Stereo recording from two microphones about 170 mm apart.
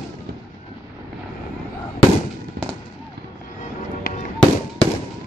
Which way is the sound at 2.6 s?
65° right (ahead or behind).